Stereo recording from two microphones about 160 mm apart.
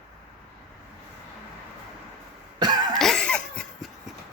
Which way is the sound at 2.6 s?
25° right (ahead or behind).